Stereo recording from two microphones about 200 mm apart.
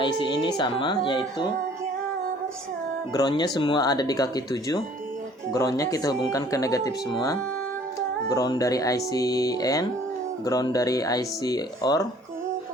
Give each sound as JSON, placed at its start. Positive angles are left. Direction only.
{"t": 0.0, "sound": "speech", "side_deg": 25}
{"t": 3.1, "sound": "speech", "side_deg": 20}